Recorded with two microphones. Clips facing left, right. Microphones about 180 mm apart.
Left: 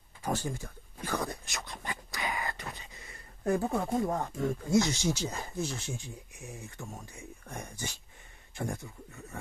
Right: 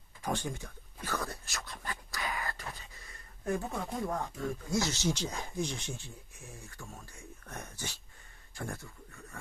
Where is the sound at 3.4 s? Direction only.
35° left (ahead or behind).